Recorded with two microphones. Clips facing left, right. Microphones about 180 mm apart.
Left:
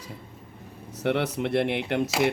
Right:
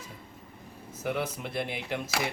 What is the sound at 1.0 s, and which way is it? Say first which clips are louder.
Speech: left 7 dB; 75° left (ahead or behind).